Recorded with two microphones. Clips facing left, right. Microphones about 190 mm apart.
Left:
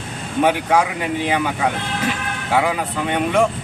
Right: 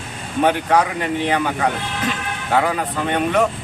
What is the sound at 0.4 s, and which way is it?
Speech, 10° left (ahead or behind).